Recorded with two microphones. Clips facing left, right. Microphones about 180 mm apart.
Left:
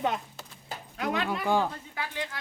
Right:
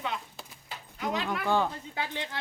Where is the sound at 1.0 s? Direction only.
65° left (ahead or behind).